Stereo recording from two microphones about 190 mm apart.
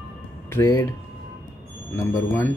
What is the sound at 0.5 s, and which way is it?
Speech, 15° left (ahead or behind).